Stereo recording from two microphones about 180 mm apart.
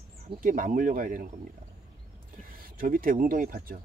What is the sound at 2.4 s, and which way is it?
Speech, 50° right (ahead or behind).